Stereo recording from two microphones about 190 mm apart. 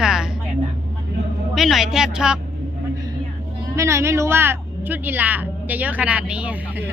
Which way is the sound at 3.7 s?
15° right (ahead or behind).